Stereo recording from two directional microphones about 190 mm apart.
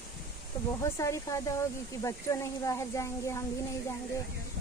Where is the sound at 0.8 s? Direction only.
15° left (ahead or behind).